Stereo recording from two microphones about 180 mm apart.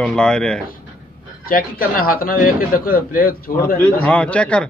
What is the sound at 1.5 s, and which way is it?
A man's voice, 55° left (ahead or behind).